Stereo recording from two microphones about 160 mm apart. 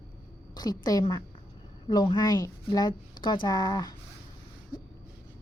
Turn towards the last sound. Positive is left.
turn(degrees=25)  # may be behind; listen again after turning